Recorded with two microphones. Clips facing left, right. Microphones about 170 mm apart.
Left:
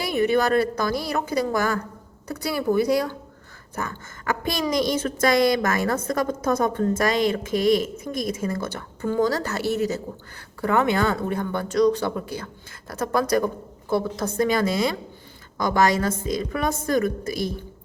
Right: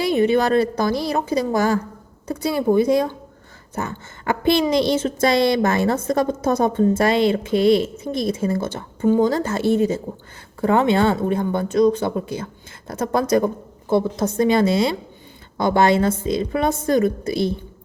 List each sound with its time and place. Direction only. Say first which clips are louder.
0.0 s a woman's voice: right 4 dB; 25° right (ahead or behind)